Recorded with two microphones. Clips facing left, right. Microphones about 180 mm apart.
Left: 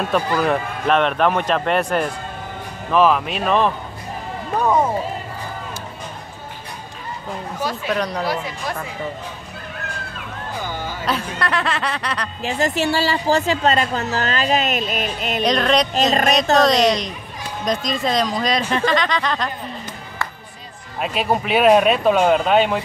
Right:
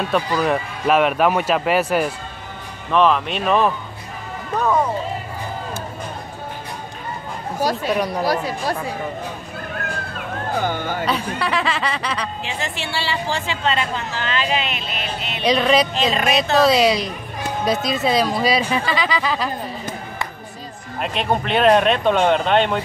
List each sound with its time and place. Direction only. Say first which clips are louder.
0.4 s speech: even; 5° right (ahead or behind)
7.5 s speech: right 5 dB; 40° right (ahead or behind)
7.9 s speech: right 2 dB; 10° right (ahead or behind)
8.3 s speech: right 3 dB; 35° right (ahead or behind)
10.1 s music: right 7 dB; 60° right (ahead or behind)
11.1 s speech: left 2 dB; centre (ahead or behind)
12.4 s a woman's voice: left 8 dB; 40° left (ahead or behind)
15.4 s speech: right 2 dB; 5° right (ahead or behind)
15.9 s speech: left 3 dB; 45° left (ahead or behind)
16.5 s speech: right 2 dB; 5° right (ahead or behind)
21.0 s speech: left 1 dB; 5° left (ahead or behind)